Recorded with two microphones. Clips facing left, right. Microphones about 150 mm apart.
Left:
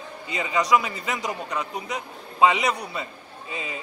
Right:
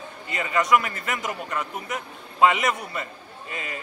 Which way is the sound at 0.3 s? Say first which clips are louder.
Even; 20° left (ahead or behind).